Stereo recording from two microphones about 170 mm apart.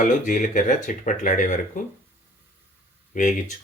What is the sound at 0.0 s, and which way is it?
Speech, 50° left (ahead or behind).